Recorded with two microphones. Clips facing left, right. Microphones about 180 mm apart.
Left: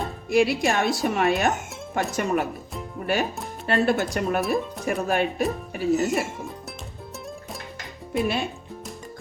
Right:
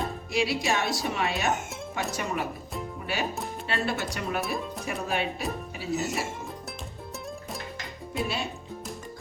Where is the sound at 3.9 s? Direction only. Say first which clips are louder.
Left 7 dB; 50° left (ahead or behind).